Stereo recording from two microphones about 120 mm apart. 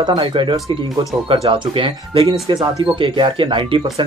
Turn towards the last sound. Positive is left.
turn(degrees=-45)  # may be behind; listen again after turning